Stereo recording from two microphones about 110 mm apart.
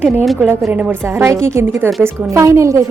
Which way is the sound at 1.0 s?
25° right (ahead or behind).